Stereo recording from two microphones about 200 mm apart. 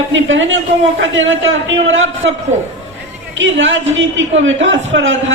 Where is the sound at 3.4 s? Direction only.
70° right (ahead or behind).